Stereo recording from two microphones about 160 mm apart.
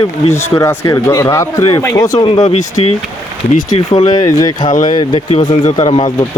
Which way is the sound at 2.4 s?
45° left (ahead or behind).